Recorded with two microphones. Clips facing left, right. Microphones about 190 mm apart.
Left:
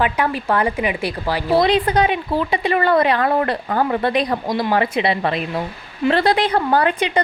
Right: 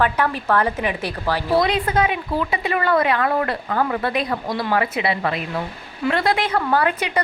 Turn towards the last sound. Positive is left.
turn(degrees=30)  # may be behind; listen again after turning